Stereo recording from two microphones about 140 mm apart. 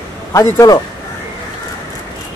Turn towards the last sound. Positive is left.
turn(degrees=25)  # may be behind; listen again after turning